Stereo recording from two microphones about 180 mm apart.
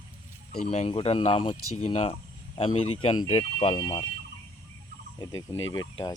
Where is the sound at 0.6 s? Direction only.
35° left (ahead or behind).